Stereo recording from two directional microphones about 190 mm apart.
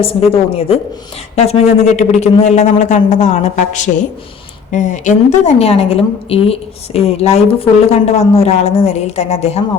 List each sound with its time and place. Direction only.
0.0 s a woman's voice: 30° left (ahead or behind)